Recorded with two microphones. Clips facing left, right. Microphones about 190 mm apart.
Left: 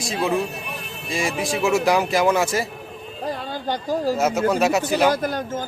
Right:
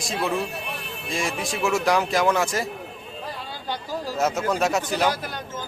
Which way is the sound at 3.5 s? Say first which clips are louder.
Left 6 dB; 45° left (ahead or behind).